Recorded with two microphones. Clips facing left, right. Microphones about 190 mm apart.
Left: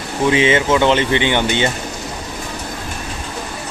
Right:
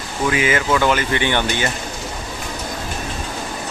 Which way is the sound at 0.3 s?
25° left (ahead or behind).